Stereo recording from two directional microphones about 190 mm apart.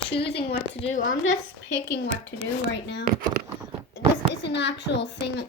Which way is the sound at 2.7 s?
65° left (ahead or behind).